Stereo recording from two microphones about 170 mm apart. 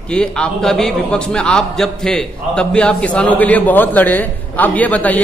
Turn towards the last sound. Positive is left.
turn(degrees=10)  # may be behind; listen again after turning